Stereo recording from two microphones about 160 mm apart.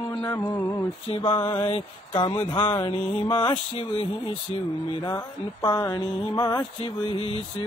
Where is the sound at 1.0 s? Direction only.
30° left (ahead or behind).